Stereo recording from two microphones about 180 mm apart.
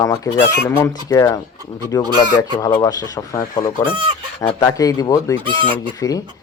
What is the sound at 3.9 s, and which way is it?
Speech, 25° right (ahead or behind).